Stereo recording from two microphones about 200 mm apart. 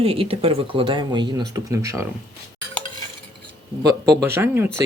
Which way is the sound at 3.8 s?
10° right (ahead or behind).